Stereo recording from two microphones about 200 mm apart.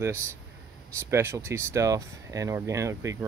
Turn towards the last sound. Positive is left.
turn(degrees=-15)  # may be behind; listen again after turning